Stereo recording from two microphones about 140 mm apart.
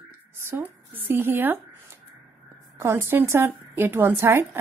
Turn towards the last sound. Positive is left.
turn(degrees=-15)  # may be behind; listen again after turning